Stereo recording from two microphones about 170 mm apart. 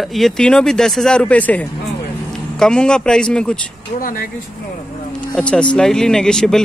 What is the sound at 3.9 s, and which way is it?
Speech, 55° left (ahead or behind).